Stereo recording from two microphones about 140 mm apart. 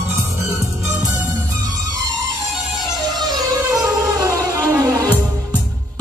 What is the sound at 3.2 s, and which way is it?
Music, 30° right (ahead or behind).